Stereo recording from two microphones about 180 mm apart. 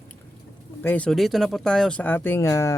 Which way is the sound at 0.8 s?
10° left (ahead or behind).